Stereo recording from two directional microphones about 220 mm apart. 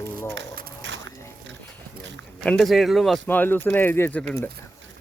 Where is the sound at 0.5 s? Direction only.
50° right (ahead or behind).